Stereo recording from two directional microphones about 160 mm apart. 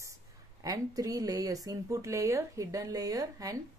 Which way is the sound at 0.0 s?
20° right (ahead or behind).